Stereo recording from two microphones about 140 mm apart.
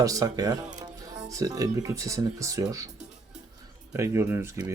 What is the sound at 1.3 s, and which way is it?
Speech, 25° right (ahead or behind).